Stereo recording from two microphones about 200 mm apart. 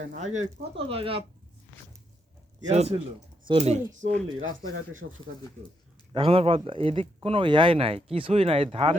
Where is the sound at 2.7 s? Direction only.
35° right (ahead or behind).